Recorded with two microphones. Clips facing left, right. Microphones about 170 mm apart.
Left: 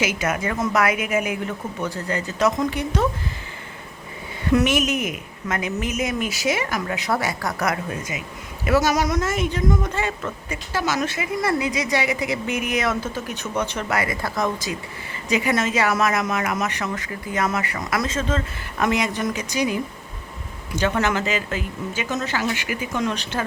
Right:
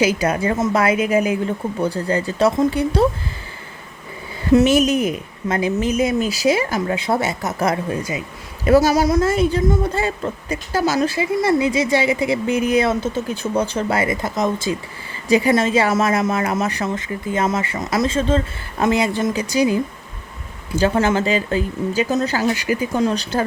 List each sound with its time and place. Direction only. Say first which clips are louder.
0.0 s speech: right 6 dB; 35° right (ahead or behind)
4.5 s a woman's voice: right 6 dB; 30° right (ahead or behind)